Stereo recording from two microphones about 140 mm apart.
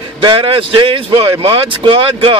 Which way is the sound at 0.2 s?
35° right (ahead or behind).